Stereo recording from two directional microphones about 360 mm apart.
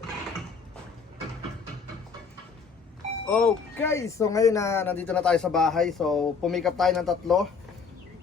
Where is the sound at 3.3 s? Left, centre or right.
Centre.